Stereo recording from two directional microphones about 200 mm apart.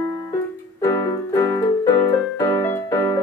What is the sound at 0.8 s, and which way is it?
Music, 15° left (ahead or behind).